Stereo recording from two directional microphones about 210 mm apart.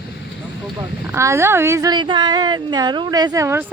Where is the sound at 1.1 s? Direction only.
15° right (ahead or behind).